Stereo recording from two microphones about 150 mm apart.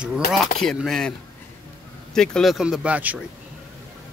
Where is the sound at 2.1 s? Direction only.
5° left (ahead or behind).